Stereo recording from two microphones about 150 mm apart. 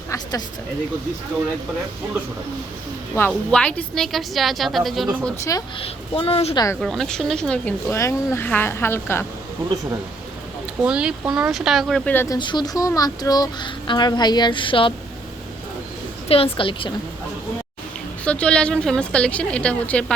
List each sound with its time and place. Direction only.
0.1 s speech: 25° left (ahead or behind)
3.2 s a woman's voice: 10° left (ahead or behind)
5.8 s a woman's voice: 40° left (ahead or behind)
6.8 s a woman's voice: centre (ahead or behind)
10.8 s a woman's voice: 5° right (ahead or behind)
12.1 s a woman's voice: 15° left (ahead or behind)
12.4 s speech: 30° left (ahead or behind)
16.3 s a woman's voice: 40° left (ahead or behind)
18.3 s a woman's voice: 5° left (ahead or behind)